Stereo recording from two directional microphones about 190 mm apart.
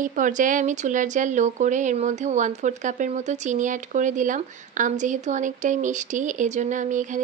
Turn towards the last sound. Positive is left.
turn(degrees=-40)  # may be behind; listen again after turning